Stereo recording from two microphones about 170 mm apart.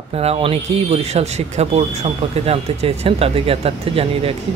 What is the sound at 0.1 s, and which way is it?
Speech, 35° right (ahead or behind).